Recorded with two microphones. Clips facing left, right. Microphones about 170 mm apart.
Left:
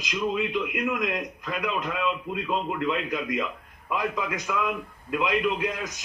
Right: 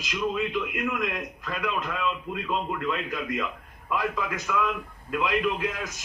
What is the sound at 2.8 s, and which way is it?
A man's voice, 15° left (ahead or behind).